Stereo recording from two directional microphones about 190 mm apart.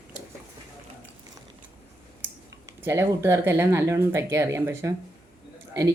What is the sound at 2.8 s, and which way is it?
Speech, 15° right (ahead or behind).